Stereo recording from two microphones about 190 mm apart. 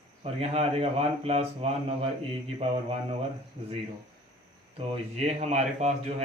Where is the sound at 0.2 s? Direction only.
30° right (ahead or behind).